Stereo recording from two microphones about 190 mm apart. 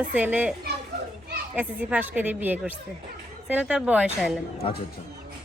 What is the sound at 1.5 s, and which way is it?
A woman's voice, 10° right (ahead or behind).